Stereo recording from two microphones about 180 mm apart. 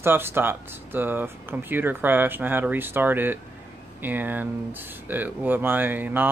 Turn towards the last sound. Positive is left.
turn(degrees=-10)  # may be behind; listen again after turning